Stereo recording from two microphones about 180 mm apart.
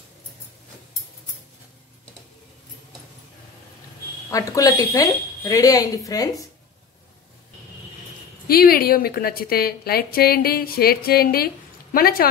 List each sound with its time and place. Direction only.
4.3 s a woman's voice: 20° left (ahead or behind)
8.5 s a woman's voice: 55° left (ahead or behind)